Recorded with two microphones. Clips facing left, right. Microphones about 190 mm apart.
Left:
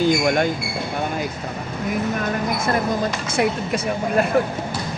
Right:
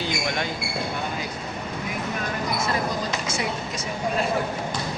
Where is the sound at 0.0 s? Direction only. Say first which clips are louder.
Left 10 dB; 45° left (ahead or behind).